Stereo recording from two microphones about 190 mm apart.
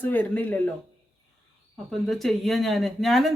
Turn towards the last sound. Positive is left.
turn(degrees=0)  # may be behind; listen again after turning